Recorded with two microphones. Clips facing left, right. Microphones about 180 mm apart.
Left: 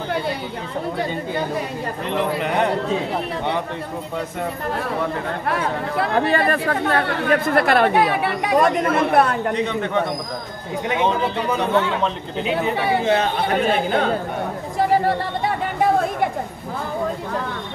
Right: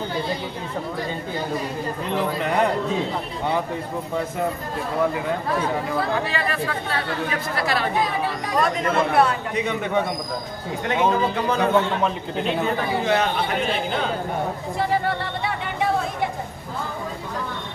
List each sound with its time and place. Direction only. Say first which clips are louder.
2.0 s a man's voice: left 2 dB; centre (ahead or behind)
5.5 s speech: left 3 dB; 70° left (ahead or behind); by 9.4 s 55° left (ahead or behind)
13.0 s speech: left 1 dB; 30° left (ahead or behind)
13.6 s speech: left 5 dB; 50° left (ahead or behind)
14.8 s chatter: left 5 dB; 40° left (ahead or behind)